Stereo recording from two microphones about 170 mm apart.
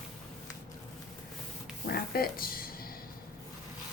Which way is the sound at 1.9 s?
65° left (ahead or behind).